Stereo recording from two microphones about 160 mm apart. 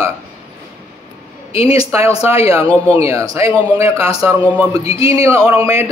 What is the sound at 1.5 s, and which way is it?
Speech, 35° left (ahead or behind).